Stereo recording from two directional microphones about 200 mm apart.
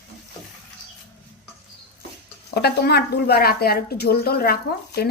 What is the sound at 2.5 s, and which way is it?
Speech, 55° left (ahead or behind).